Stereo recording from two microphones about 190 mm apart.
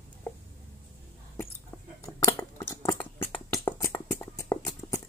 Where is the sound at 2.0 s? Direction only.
15° left (ahead or behind).